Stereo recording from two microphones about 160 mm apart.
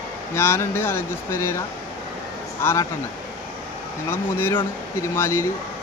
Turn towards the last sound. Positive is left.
turn(degrees=15)  # may be behind; listen again after turning